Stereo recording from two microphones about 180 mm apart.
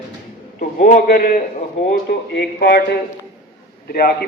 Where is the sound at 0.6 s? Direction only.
50° left (ahead or behind).